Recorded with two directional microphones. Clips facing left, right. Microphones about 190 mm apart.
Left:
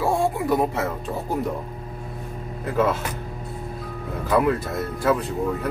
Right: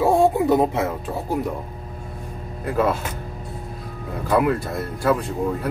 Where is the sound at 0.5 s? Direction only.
20° right (ahead or behind).